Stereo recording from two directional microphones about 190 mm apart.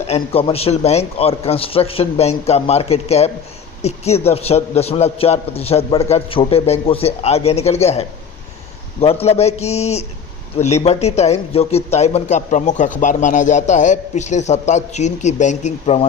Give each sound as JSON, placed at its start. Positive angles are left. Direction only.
{"t": 0.1, "sound": "speech", "side_deg": 30}